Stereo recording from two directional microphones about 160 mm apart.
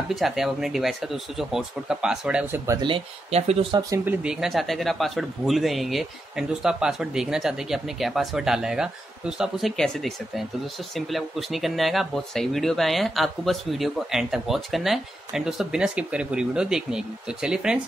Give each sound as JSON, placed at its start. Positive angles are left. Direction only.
{"t": 0.1, "sound": "speech", "side_deg": 0}
{"t": 2.8, "sound": "speech", "side_deg": -35}
{"t": 4.0, "sound": "speech", "side_deg": -10}